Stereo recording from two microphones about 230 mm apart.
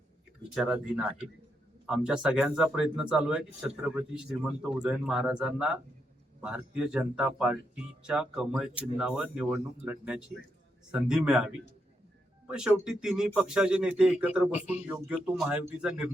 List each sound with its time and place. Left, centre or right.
0.5 s speech: centre
14.5 s speech: left
14.8 s speech: centre